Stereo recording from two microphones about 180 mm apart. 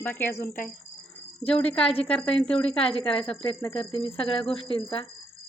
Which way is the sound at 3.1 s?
30° left (ahead or behind).